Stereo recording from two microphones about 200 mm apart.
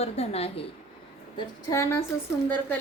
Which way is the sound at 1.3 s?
15° left (ahead or behind).